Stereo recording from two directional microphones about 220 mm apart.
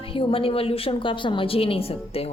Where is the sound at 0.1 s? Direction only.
25° left (ahead or behind).